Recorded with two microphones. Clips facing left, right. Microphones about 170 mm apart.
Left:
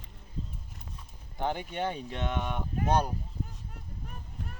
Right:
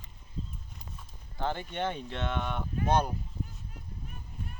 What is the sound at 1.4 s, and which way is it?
Speech, 15° left (ahead or behind).